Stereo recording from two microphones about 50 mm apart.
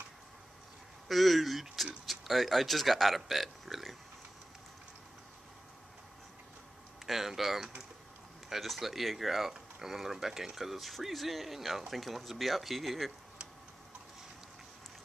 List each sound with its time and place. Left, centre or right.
1.0 s a sound: centre
2.0 s speech: centre
7.1 s speech: centre